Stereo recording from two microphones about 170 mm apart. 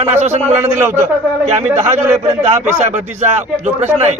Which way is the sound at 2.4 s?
40° right (ahead or behind).